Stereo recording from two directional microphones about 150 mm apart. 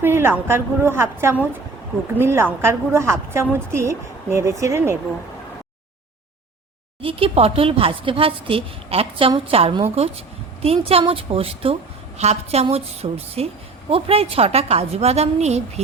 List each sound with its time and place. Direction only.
0.0 s a woman's voice: 15° right (ahead or behind)
7.0 s a woman's voice: 40° right (ahead or behind)